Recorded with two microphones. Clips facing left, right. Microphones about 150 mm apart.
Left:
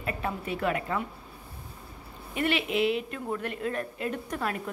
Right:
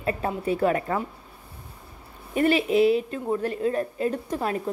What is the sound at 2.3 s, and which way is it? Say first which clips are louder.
Speech: right 7 dB; 40° right (ahead or behind).